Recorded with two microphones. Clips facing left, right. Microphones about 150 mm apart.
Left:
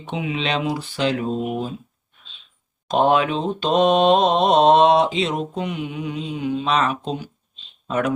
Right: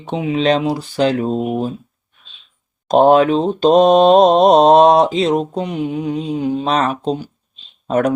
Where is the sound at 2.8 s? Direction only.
40° right (ahead or behind).